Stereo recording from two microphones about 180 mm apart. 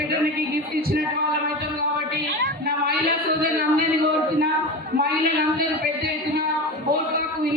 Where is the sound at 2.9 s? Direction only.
60° right (ahead or behind).